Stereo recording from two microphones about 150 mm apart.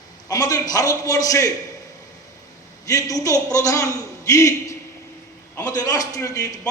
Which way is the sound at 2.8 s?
25° left (ahead or behind).